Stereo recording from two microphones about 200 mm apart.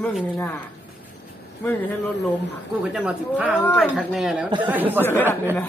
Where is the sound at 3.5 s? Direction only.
10° left (ahead or behind); by 5.0 s 10° right (ahead or behind).